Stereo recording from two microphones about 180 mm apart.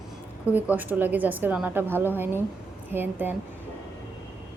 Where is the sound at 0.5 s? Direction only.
10° right (ahead or behind).